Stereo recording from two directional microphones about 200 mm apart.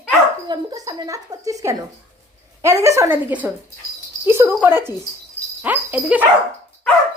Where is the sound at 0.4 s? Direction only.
20° right (ahead or behind).